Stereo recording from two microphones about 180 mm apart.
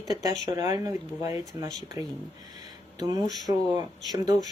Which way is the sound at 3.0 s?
20° right (ahead or behind).